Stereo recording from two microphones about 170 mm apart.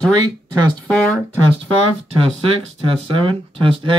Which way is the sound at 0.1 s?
25° right (ahead or behind).